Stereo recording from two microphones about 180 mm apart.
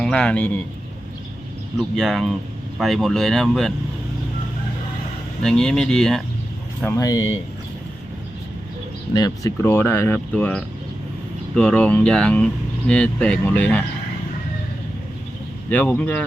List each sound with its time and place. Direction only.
0.0 s speech: 5° left (ahead or behind)
2.0 s speech: centre (ahead or behind)
5.4 s speech: 5° left (ahead or behind)
6.8 s speech: 15° left (ahead or behind)
9.1 s speech: 20° left (ahead or behind)
15.7 s speech: 10° left (ahead or behind)